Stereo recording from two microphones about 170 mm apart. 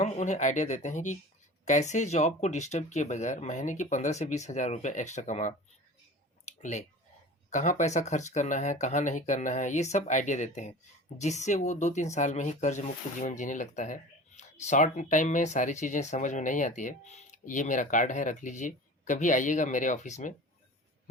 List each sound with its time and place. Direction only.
0.0 s speech: 45° left (ahead or behind)
6.4 s a sound: 45° left (ahead or behind)
7.5 s speech: 45° left (ahead or behind)